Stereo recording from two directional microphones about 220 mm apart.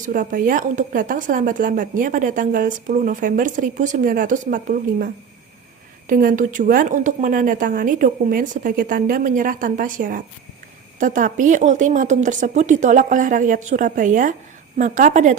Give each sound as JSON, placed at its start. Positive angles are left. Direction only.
{"t": 0.0, "sound": "speech", "side_deg": -35}